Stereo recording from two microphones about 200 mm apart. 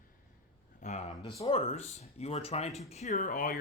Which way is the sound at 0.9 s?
35° left (ahead or behind).